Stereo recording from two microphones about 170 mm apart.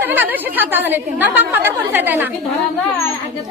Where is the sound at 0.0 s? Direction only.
10° right (ahead or behind).